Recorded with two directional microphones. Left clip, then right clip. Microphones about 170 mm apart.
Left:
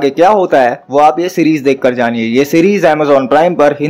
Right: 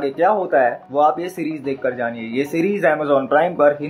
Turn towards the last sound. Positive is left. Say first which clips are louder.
# left 6 dB
turn(degrees=30)  # may be behind; listen again after turning